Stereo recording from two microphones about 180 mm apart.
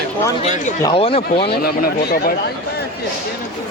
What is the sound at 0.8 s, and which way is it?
Speech, 25° left (ahead or behind).